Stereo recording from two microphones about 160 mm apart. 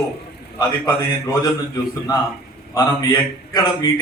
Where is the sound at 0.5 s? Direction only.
20° left (ahead or behind).